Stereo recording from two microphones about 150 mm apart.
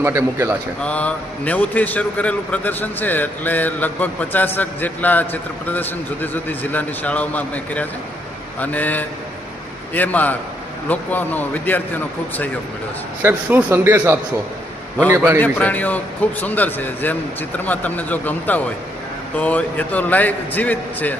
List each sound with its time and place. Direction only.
0.0 s a man's voice: 15° right (ahead or behind)
0.8 s a man's voice: 10° left (ahead or behind)
13.2 s a man's voice: 10° right (ahead or behind)
15.4 s a man's voice: 10° left (ahead or behind)